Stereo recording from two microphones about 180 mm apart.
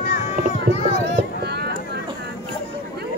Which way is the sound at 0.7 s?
40° left (ahead or behind).